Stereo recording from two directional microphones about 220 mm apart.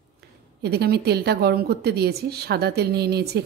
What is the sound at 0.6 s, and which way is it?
A woman's voice, 45° right (ahead or behind).